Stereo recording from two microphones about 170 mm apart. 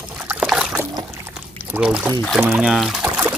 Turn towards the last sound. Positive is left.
turn(degrees=-5)  # may be behind; listen again after turning